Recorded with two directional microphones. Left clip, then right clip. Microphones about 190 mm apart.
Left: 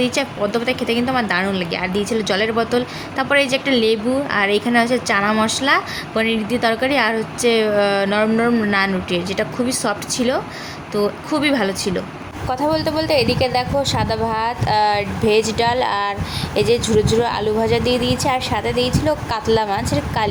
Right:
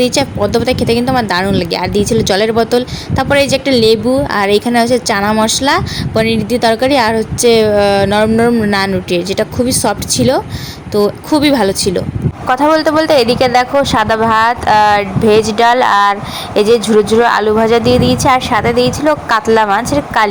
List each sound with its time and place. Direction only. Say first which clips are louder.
0.0 s speech: right 7 dB; 25° right (ahead or behind)